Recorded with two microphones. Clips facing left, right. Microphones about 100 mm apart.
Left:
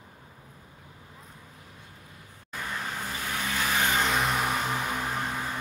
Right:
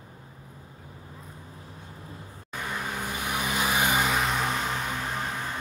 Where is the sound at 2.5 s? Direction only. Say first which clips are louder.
Right 1 dB; 15° right (ahead or behind); by 4.5 s centre (ahead or behind).